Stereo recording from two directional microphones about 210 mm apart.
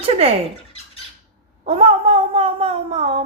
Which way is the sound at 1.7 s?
30° right (ahead or behind).